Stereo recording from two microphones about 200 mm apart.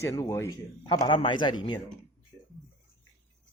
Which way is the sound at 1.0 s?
25° left (ahead or behind).